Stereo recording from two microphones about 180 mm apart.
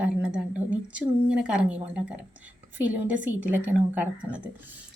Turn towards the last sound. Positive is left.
turn(degrees=-5)  # may be behind; listen again after turning